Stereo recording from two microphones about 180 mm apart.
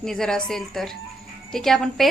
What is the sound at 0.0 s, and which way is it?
A woman's voice, 5° left (ahead or behind).